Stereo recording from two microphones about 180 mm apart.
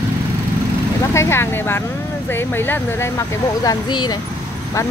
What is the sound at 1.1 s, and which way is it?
Speech, 15° left (ahead or behind).